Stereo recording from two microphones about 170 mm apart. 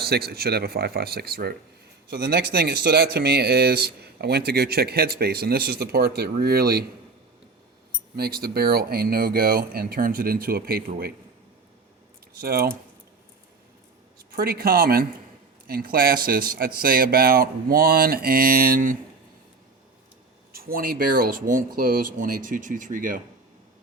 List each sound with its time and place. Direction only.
0.0 s speech: 70° right (ahead or behind)
8.1 s speech: 65° right (ahead or behind)
12.3 s speech: 65° right (ahead or behind)
14.2 s speech: 60° right (ahead or behind)
20.5 s speech: 60° right (ahead or behind)